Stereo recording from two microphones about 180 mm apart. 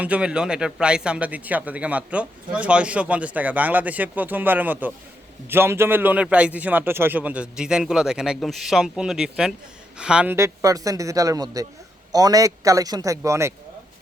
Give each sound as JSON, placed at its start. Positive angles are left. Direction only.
{"t": 0.0, "sound": "a man's voice", "side_deg": -5}